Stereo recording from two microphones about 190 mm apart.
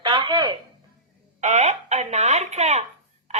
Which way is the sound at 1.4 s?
35° right (ahead or behind).